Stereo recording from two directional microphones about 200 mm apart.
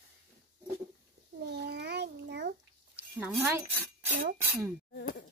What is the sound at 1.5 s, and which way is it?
Babbling, 55° right (ahead or behind).